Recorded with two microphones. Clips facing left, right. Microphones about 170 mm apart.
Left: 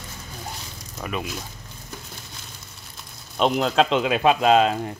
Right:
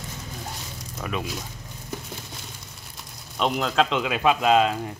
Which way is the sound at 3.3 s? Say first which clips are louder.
Left 3 dB; 30° left (ahead or behind).